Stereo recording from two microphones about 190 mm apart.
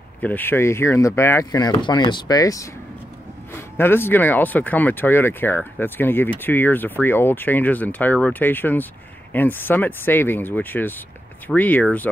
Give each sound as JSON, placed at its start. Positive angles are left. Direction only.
{"t": 0.2, "sound": "speech", "side_deg": 10}
{"t": 3.7, "sound": "speech", "side_deg": 10}